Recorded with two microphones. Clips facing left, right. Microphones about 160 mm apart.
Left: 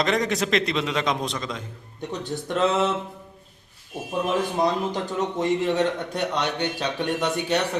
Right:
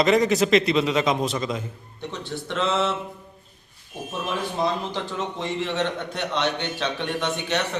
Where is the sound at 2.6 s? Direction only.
40° left (ahead or behind).